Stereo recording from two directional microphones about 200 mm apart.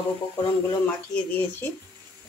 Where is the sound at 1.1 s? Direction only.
10° left (ahead or behind).